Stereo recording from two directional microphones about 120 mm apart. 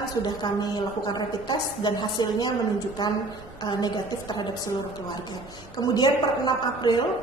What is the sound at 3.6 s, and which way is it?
Speech, 35° left (ahead or behind).